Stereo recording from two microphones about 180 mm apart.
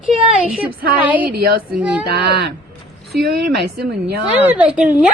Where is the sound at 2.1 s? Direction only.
65° right (ahead or behind).